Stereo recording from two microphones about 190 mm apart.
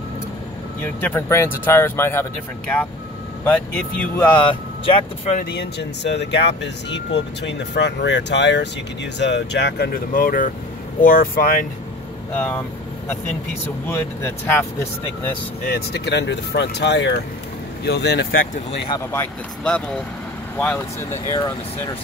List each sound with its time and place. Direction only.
0.7 s speech: 10° left (ahead or behind)
3.4 s speech: 10° left (ahead or behind)
4.2 s speech: 25° left (ahead or behind)
5.4 s speech: 60° left (ahead or behind)
12.4 s speech: 10° left (ahead or behind)
13.8 s speech: 10° left (ahead or behind)
15.6 s speech: 60° left (ahead or behind)
20.5 s speech: 10° left (ahead or behind)
21.3 s speech: 20° left (ahead or behind)